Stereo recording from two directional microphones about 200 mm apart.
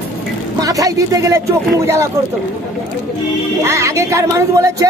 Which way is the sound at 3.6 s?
15° right (ahead or behind).